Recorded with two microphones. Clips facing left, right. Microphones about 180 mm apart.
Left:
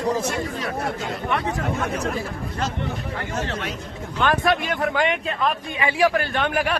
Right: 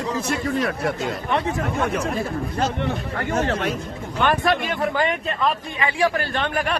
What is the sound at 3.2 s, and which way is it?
Speech, 55° right (ahead or behind).